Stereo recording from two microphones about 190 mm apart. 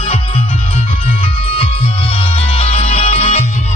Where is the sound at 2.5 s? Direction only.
30° left (ahead or behind).